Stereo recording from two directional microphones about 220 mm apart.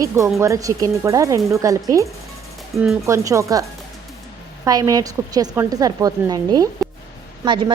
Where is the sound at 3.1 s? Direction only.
15° right (ahead or behind).